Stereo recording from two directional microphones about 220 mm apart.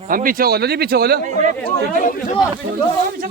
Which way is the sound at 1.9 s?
35° left (ahead or behind).